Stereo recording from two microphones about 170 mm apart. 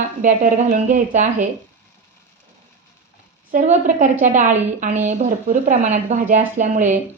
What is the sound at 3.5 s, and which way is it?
A woman's voice, 45° right (ahead or behind).